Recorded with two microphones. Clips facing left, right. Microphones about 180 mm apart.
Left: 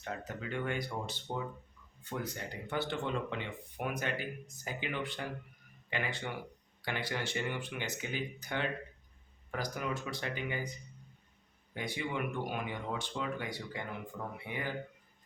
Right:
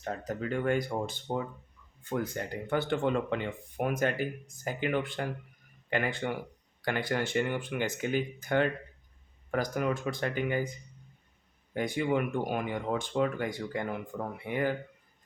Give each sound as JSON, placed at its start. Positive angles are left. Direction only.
{"t": 0.0, "sound": "speech", "side_deg": -40}
{"t": 11.7, "sound": "speech", "side_deg": -50}